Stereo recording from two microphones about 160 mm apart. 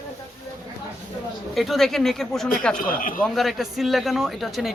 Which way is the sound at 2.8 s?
60° left (ahead or behind).